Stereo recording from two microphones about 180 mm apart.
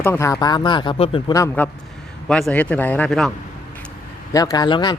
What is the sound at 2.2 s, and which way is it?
Speech, 5° left (ahead or behind).